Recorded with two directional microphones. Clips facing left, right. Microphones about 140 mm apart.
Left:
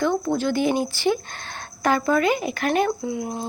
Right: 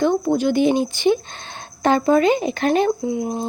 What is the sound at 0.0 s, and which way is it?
A woman's voice, 15° right (ahead or behind).